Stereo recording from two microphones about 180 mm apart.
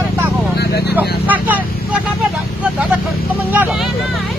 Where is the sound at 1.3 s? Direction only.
10° right (ahead or behind).